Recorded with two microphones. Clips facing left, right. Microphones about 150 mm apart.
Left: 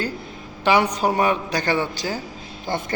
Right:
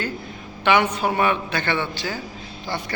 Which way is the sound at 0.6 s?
35° left (ahead or behind).